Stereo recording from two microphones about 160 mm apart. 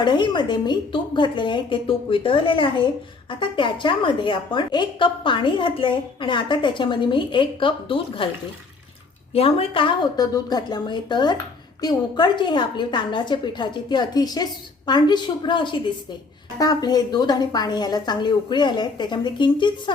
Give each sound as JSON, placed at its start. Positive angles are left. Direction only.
{"t": 0.0, "sound": "a woman's voice", "side_deg": 30}
{"t": 9.3, "sound": "a woman's voice", "side_deg": 35}